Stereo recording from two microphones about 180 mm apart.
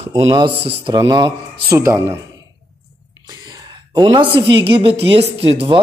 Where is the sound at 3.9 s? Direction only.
25° right (ahead or behind).